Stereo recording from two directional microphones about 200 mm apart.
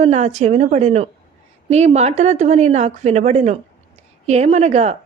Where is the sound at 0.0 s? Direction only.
35° right (ahead or behind).